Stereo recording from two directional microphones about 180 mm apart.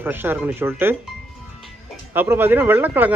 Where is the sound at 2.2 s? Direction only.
10° right (ahead or behind).